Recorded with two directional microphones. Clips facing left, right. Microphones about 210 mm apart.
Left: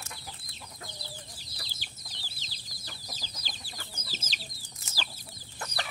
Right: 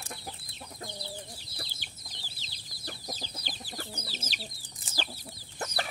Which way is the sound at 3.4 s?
60° right (ahead or behind).